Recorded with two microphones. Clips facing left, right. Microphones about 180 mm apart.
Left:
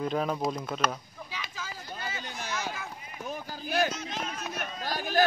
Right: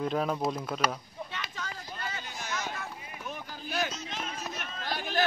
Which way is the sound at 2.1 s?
5° left (ahead or behind).